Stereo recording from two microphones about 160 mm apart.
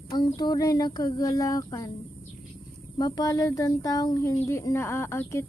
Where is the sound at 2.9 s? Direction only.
25° left (ahead or behind).